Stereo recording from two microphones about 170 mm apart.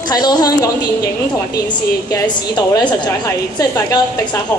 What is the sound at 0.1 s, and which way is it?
Speech, 25° left (ahead or behind).